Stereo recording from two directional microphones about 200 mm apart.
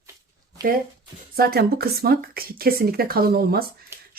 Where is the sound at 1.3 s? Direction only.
50° right (ahead or behind).